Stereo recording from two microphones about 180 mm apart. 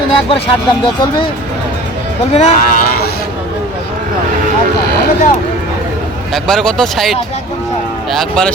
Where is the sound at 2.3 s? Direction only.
45° left (ahead or behind).